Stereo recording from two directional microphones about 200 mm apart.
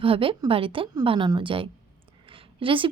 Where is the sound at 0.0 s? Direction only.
25° right (ahead or behind).